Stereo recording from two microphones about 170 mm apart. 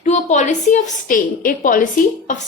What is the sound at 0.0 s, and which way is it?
A woman's voice, 45° left (ahead or behind).